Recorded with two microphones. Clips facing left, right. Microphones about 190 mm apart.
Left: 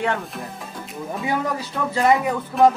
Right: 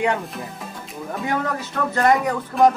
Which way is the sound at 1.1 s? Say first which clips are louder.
Even; 10° left (ahead or behind).